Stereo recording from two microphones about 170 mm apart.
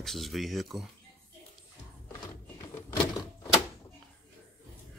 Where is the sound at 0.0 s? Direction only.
Centre (ahead or behind).